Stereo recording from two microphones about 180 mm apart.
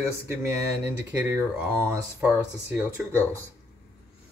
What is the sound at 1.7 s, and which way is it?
Speech, 15° right (ahead or behind).